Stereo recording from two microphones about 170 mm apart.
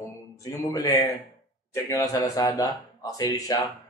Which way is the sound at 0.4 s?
20° left (ahead or behind).